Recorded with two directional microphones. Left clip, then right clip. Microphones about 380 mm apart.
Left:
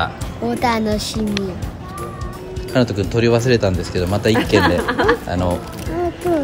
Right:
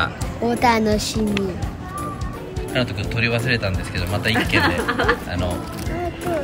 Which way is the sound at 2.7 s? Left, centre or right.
Centre.